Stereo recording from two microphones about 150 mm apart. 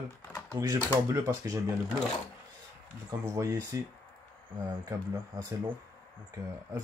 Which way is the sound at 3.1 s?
25° right (ahead or behind).